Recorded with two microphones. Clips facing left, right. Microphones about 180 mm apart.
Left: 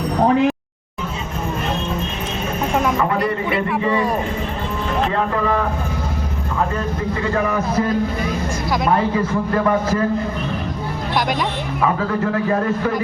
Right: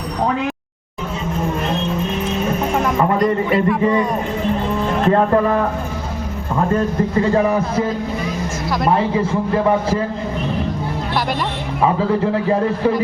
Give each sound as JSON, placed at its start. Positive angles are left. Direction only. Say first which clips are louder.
{"t": 7.3, "sound": "a man's voice", "louder": "right 3 dB", "side_deg": -25}
{"t": 9.1, "sound": "a man's voice", "louder": "right 1 dB", "side_deg": -25}
{"t": 11.8, "sound": "a man's voice", "louder": "right 3 dB", "side_deg": -25}